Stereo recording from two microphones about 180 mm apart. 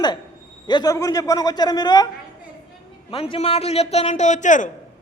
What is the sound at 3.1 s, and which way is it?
A man's voice, 30° left (ahead or behind).